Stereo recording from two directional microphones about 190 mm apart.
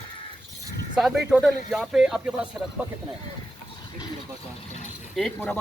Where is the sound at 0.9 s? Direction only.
Centre (ahead or behind).